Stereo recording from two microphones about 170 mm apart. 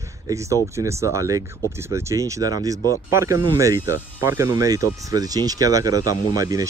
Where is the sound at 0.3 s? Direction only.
20° right (ahead or behind).